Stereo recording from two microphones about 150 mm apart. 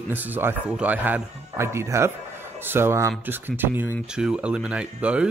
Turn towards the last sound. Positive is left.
turn(degrees=-10)  # may be behind; listen again after turning